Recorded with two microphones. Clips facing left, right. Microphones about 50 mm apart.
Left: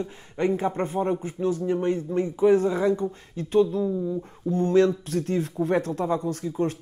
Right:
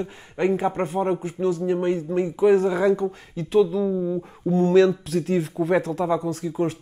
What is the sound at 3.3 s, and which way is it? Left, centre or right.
Speech, right.